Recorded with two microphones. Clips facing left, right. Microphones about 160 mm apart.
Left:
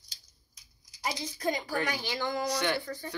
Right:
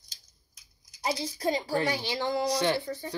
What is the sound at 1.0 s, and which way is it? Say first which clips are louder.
A woman's voice: right 3 dB; 30° right (ahead or behind).